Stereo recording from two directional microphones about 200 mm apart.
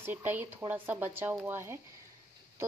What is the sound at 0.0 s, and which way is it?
A woman's voice, 10° right (ahead or behind).